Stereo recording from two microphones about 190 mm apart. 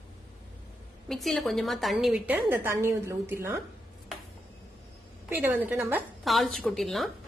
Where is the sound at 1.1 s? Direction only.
Centre (ahead or behind).